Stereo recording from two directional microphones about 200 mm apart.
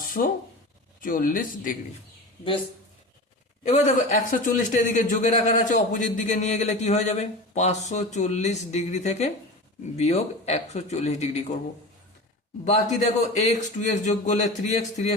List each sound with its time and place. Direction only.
0.2 s speech: 50° left (ahead or behind)
3.6 s speech: 35° left (ahead or behind)
12.6 s speech: 35° left (ahead or behind)